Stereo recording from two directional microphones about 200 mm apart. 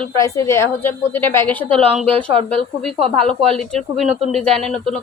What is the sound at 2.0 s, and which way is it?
Speech, 25° right (ahead or behind).